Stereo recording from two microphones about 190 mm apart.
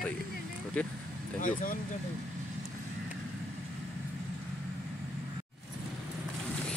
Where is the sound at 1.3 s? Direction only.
45° left (ahead or behind).